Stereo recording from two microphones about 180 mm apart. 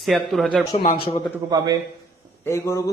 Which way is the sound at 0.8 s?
55° left (ahead or behind).